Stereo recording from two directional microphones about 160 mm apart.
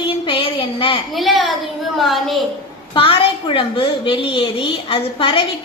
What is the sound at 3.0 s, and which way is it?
A woman's voice, 30° left (ahead or behind).